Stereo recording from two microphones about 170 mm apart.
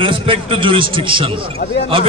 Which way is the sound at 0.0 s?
30° right (ahead or behind).